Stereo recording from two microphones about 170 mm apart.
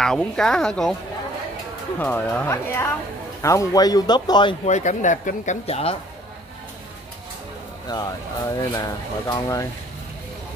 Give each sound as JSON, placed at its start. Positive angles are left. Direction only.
{"t": 0.0, "sound": "speech", "side_deg": 5}
{"t": 2.0, "sound": "speech", "side_deg": 10}
{"t": 4.6, "sound": "speech", "side_deg": 45}
{"t": 7.9, "sound": "speech", "side_deg": 25}